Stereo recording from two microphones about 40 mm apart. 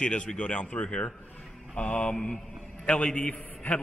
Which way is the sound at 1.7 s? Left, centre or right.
Left.